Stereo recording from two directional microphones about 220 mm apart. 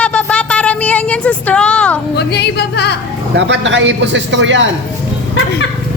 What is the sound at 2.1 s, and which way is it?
Music, 50° left (ahead or behind).